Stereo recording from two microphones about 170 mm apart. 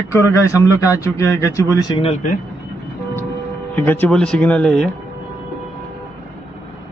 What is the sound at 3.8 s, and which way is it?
A man's voice, 10° left (ahead or behind).